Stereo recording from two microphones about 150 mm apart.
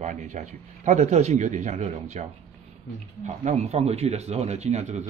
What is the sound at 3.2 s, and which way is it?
Speech, 50° right (ahead or behind).